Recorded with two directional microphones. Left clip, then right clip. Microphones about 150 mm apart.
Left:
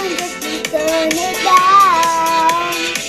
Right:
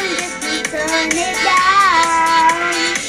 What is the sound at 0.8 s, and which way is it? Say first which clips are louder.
Child singing: left 1 dB; 15° left (ahead or behind).